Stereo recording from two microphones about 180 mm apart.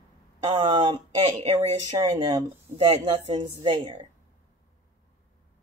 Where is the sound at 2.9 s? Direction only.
30° right (ahead or behind).